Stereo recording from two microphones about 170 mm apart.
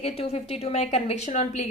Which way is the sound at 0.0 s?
40° left (ahead or behind).